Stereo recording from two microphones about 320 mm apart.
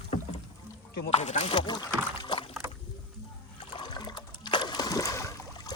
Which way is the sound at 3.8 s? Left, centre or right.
Centre.